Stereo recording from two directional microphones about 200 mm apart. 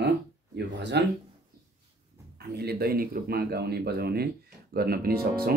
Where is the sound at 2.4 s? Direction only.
55° right (ahead or behind).